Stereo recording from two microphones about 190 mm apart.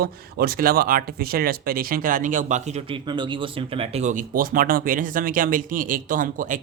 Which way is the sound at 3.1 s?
25° right (ahead or behind).